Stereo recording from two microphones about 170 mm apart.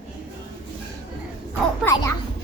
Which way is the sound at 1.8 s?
15° left (ahead or behind).